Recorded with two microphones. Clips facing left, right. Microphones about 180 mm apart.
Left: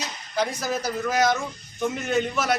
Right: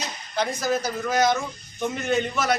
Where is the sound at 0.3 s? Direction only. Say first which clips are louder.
Right 1 dB; 5° left (ahead or behind).